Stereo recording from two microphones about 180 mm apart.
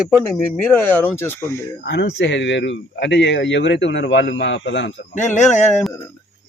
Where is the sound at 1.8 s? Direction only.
80° left.